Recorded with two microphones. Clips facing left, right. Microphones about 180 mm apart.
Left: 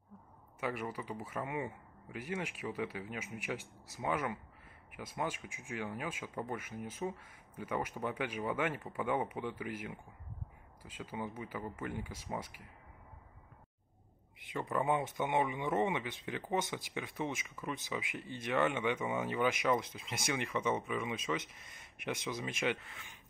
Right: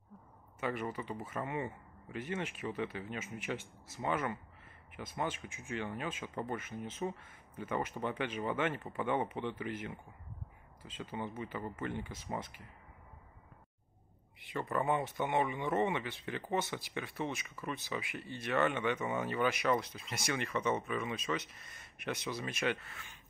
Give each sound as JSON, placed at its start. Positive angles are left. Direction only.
{"t": 0.6, "sound": "speech", "side_deg": 10}
{"t": 14.8, "sound": "speech", "side_deg": 10}